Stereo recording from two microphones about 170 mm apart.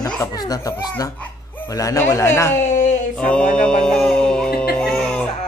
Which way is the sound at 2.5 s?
45° left (ahead or behind).